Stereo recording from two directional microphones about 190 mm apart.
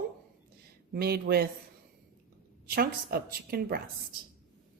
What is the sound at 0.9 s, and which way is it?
Speech, 55° right (ahead or behind).